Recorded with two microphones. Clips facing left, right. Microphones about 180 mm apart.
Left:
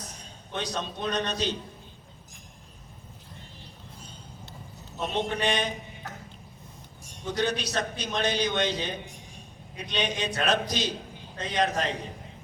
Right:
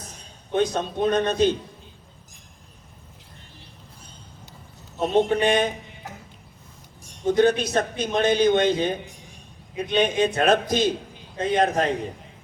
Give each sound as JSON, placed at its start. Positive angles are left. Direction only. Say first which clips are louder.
{"t": 0.5, "sound": "a man's voice", "louder": "right 10 dB", "side_deg": -50}
{"t": 4.9, "sound": "a man's voice", "louder": "right 9 dB", "side_deg": -50}
{"t": 7.3, "sound": "a man's voice", "louder": "right 10 dB", "side_deg": -50}